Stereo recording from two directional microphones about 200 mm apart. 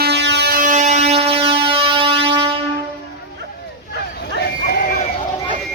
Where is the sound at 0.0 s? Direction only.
60° right (ahead or behind); by 2.5 s 25° right (ahead or behind).